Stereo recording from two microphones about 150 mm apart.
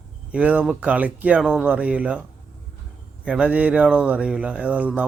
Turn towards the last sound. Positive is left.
turn(degrees=-10)  # may be behind; listen again after turning